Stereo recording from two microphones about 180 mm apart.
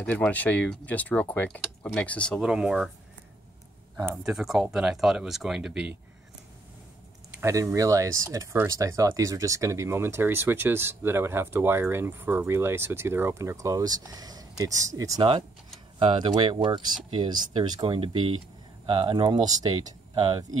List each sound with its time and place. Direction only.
0.0 s speech: 10° left (ahead or behind)
2.4 s speech: 5° right (ahead or behind)
3.9 s speech: 10° right (ahead or behind)
7.3 s speech: 15° right (ahead or behind)